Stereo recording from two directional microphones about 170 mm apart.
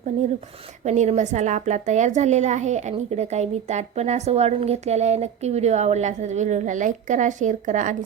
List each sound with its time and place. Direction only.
0.9 s a woman's voice: 45° right (ahead or behind)